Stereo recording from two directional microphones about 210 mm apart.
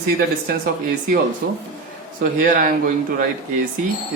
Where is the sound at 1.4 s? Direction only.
50° right (ahead or behind).